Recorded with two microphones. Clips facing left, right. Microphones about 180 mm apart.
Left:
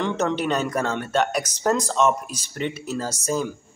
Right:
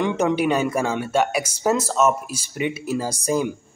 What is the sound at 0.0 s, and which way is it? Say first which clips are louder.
Speech: right 3 dB; 10° right (ahead or behind).